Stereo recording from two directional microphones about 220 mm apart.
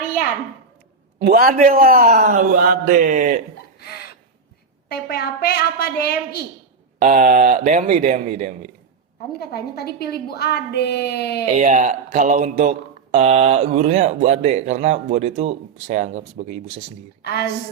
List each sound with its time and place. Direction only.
1.2 s speech: 45° right (ahead or behind)
3.8 s a sound: 45° left (ahead or behind)
4.9 s a woman's voice: 45° left (ahead or behind)
7.0 s speech: 35° right (ahead or behind)
9.4 s a woman's voice: 45° left (ahead or behind)
11.5 s speech: 35° right (ahead or behind)
17.2 s a woman's voice: 45° left (ahead or behind)